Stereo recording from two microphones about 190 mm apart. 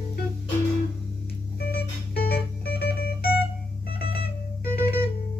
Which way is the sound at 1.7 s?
55° left (ahead or behind).